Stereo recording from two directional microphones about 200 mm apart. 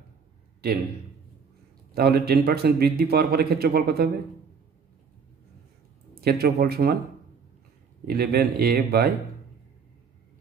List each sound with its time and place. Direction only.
2.0 s a man's voice: 55° right (ahead or behind)
6.2 s a man's voice: 50° right (ahead or behind)
8.0 s a man's voice: 50° right (ahead or behind)